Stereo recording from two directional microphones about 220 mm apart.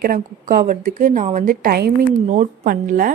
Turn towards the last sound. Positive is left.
turn(degrees=-40)  # may be behind; listen again after turning